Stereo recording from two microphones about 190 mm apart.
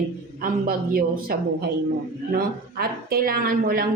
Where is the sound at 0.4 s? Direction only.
50° right (ahead or behind).